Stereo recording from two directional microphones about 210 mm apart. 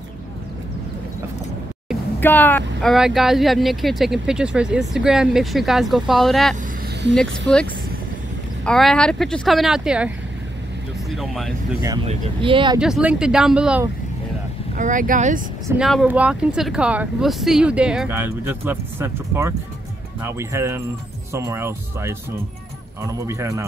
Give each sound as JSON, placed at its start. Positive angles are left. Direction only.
{"t": 2.1, "sound": "speech", "side_deg": 10}
{"t": 12.1, "sound": "speech", "side_deg": -25}
{"t": 12.7, "sound": "speech", "side_deg": -5}
{"t": 14.8, "sound": "speech", "side_deg": -40}
{"t": 15.8, "sound": "speech", "side_deg": 0}